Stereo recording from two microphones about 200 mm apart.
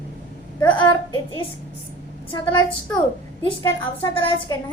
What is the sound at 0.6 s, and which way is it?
Speech, 20° left (ahead or behind).